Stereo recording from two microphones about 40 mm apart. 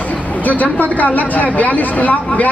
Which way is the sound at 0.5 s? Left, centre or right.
Left.